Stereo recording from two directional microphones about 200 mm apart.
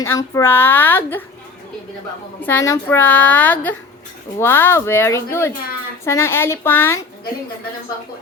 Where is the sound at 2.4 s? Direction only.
10° left (ahead or behind).